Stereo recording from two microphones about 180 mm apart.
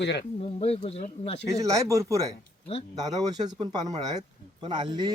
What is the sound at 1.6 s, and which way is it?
Speech, 15° right (ahead or behind).